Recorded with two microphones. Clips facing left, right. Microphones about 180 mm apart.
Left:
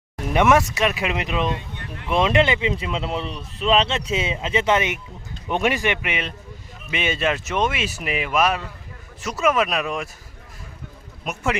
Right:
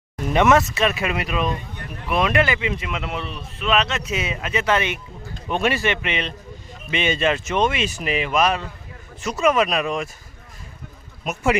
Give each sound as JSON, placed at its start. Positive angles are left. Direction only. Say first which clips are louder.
{"t": 0.3, "sound": "a man's voice", "louder": "right 1 dB", "side_deg": 15}